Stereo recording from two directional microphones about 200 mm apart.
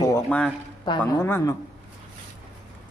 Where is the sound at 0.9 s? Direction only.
20° left (ahead or behind).